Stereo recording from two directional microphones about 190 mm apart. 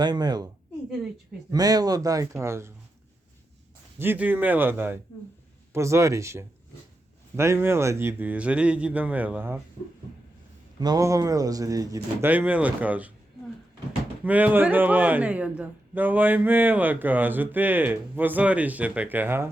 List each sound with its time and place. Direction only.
0.0 s a woman's voice: 20° right (ahead or behind)
1.5 s a man's voice: 20° right (ahead or behind)
3.9 s a man's voice: 10° right (ahead or behind)
10.8 s a man's voice: 20° right (ahead or behind)
14.3 s a man's voice: 10° right (ahead or behind)